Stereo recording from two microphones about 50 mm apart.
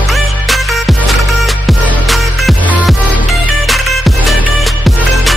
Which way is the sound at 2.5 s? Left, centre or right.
Left.